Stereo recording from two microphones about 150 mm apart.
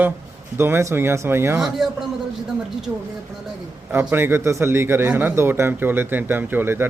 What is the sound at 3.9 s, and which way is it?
A man's voice, 15° right (ahead or behind).